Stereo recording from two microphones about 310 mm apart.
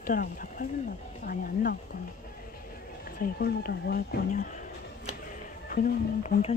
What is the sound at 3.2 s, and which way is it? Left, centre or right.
Speech, left.